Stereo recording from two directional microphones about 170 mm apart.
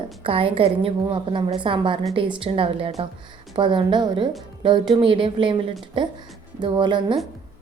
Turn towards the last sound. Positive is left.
turn(degrees=-30)  # may be behind; listen again after turning